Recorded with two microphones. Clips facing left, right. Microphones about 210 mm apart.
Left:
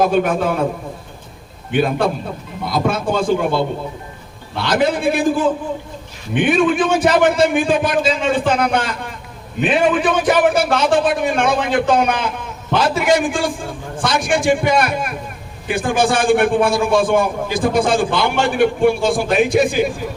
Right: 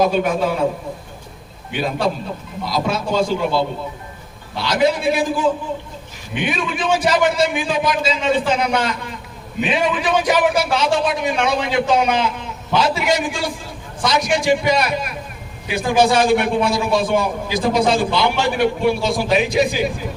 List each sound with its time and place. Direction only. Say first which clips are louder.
0.0 s a man's voice: left 1 dB; 50° left (ahead or behind)
1.7 s a man's voice: left 4 dB; 55° left (ahead or behind)